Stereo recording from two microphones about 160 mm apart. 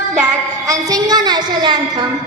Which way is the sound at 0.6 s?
20° right (ahead or behind).